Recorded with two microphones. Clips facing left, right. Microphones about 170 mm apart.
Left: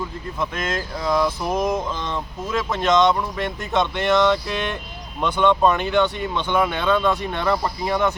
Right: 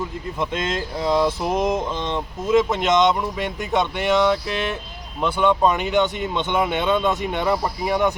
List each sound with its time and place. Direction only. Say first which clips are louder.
0.3 s speech: right 1 dB; 25° right (ahead or behind)